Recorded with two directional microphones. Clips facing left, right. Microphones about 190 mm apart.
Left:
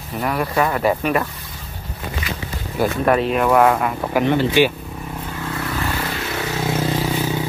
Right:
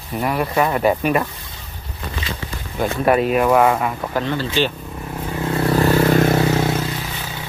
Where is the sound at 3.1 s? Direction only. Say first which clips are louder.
Right 2 dB; 5° right (ahead or behind).